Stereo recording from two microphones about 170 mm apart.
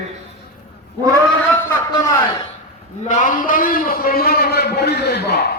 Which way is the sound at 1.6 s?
15° left (ahead or behind).